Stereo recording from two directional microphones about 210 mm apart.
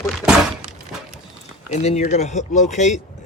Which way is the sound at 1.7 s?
35° left (ahead or behind).